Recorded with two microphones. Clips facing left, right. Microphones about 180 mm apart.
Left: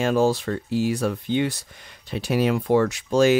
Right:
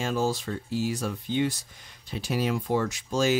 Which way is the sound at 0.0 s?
65° left (ahead or behind).